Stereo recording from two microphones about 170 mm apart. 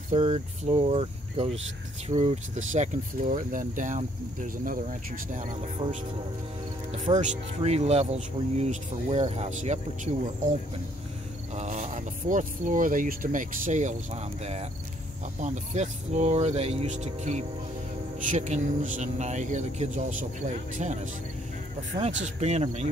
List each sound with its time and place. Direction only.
0.1 s speech: 40° right (ahead or behind)
7.2 s speech: 40° right (ahead or behind)
11.5 s speech: 45° right (ahead or behind)
22.2 s speech: 40° right (ahead or behind)